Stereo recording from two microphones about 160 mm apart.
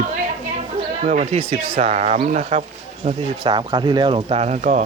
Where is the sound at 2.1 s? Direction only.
55° right (ahead or behind).